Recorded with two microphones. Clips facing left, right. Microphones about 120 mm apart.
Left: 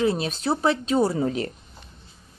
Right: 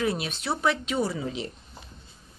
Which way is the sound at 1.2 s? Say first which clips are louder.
Left 8 dB; 50° left (ahead or behind).